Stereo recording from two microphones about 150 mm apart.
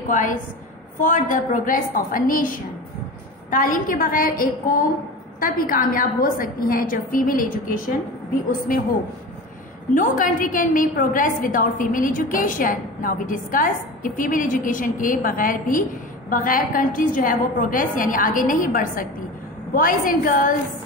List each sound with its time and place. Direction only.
0.1 s a woman's voice: 60° left (ahead or behind)
9.9 s a woman's voice: 60° left (ahead or behind)